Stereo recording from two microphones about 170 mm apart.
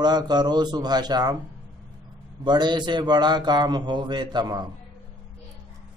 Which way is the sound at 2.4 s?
25° right (ahead or behind).